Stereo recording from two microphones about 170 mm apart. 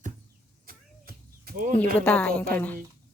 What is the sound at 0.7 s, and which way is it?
Power windows, 60° right (ahead or behind).